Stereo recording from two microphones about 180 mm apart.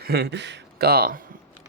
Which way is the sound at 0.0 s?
65° right (ahead or behind).